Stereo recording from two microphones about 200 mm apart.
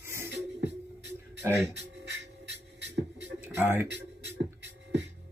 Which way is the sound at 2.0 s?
55° right (ahead or behind).